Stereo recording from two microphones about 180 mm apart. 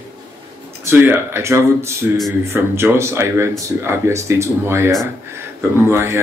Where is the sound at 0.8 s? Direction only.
10° right (ahead or behind).